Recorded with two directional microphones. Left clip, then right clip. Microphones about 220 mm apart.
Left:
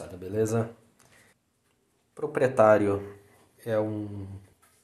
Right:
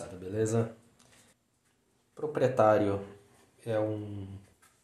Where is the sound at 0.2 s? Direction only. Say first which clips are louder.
Left 3 dB; 25° left (ahead or behind).